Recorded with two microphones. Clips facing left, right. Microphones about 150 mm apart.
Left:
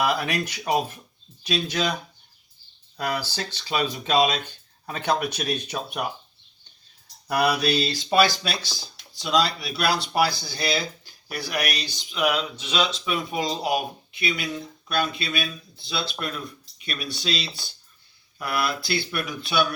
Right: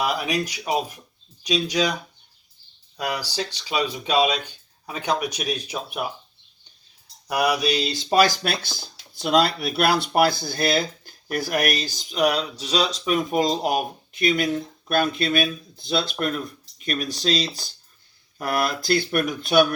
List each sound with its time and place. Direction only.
0.0 s speech: 10° right (ahead or behind)
3.0 s speech: 15° right (ahead or behind)
7.3 s speech: 10° right (ahead or behind)
8.1 s speech: 45° right (ahead or behind)